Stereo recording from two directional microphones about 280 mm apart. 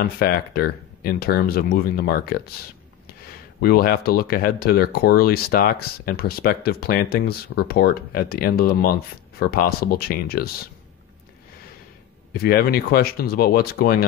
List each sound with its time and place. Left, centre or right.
0.0 s speech: left
3.6 s speech: left
12.4 s speech: left